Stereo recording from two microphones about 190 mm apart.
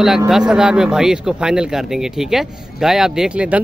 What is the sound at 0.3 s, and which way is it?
Speech, 5° right (ahead or behind).